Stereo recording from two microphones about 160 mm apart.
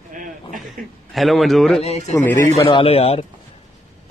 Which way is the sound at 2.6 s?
30° left (ahead or behind).